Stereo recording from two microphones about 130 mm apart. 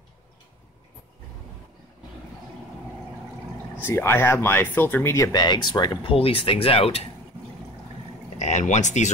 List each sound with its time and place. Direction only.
3.8 s speech: 20° left (ahead or behind); by 7.1 s 50° left (ahead or behind)
8.4 s speech: 65° left (ahead or behind)